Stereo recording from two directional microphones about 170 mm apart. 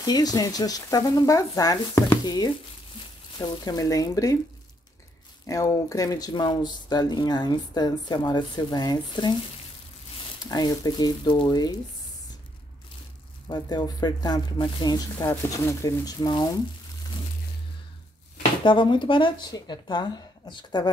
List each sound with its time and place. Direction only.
0.0 s speech: 20° left (ahead or behind)
5.5 s speech: 20° left (ahead or behind)
10.4 s speech: 25° left (ahead or behind)
13.5 s speech: 25° left (ahead or behind)
18.6 s speech: 30° left (ahead or behind)